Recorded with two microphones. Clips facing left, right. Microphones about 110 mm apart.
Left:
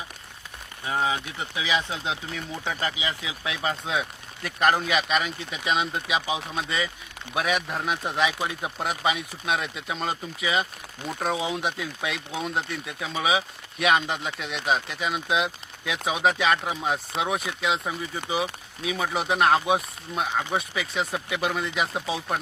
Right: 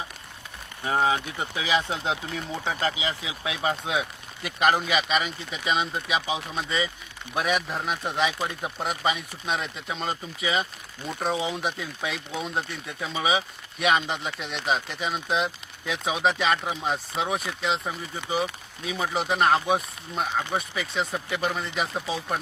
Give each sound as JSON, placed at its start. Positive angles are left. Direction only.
{"t": 0.9, "sound": "speech", "side_deg": -35}
{"t": 2.3, "sound": "speech", "side_deg": -25}